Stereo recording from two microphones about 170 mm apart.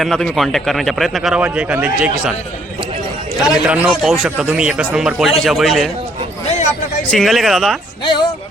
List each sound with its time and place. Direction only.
0.0 s speech: centre (ahead or behind)
3.4 s a man's voice: 5° right (ahead or behind)
6.5 s a sound: 40° left (ahead or behind)
7.1 s speech: centre (ahead or behind)